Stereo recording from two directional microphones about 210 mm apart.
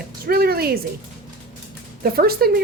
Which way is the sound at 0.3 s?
45° right (ahead or behind).